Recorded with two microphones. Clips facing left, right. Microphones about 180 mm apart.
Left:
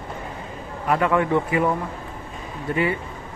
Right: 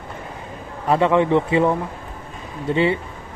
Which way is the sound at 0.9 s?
25° right (ahead or behind).